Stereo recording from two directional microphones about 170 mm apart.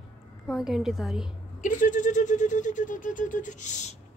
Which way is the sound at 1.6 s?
50° left (ahead or behind).